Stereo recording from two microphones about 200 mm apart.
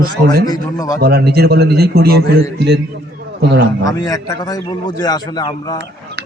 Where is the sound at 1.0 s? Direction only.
55° right (ahead or behind).